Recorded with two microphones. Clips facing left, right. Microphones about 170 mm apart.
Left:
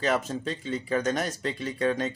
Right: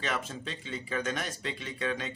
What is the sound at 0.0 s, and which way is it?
A man's voice, 40° left (ahead or behind).